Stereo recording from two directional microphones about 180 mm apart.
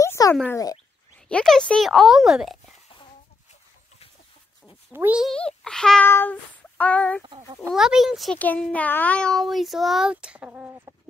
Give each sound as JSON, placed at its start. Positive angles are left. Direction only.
{"t": 0.0, "sound": "a sound", "side_deg": 15}
{"t": 0.5, "sound": "speech", "side_deg": 20}
{"t": 1.3, "sound": "a child's voice", "side_deg": 5}
{"t": 4.9, "sound": "speech", "side_deg": -10}
{"t": 5.3, "sound": "a child's voice", "side_deg": 5}
{"t": 7.2, "sound": "a child's voice", "side_deg": -25}
{"t": 7.7, "sound": "a child's voice", "side_deg": 0}